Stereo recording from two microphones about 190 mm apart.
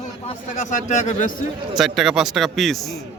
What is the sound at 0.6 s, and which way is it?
Speech, 40° left (ahead or behind).